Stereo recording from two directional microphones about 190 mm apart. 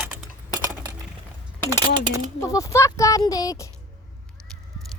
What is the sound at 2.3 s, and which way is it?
Speech, 15° left (ahead or behind).